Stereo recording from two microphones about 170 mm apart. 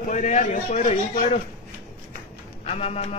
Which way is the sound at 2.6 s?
35° left (ahead or behind).